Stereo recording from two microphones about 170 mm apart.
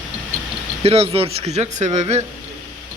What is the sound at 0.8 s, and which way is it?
Speech, 35° right (ahead or behind).